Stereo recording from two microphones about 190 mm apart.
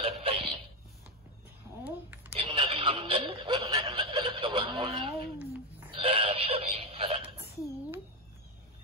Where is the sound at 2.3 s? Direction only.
25° right (ahead or behind).